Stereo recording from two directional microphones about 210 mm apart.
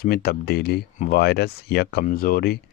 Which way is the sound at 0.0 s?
45° left (ahead or behind).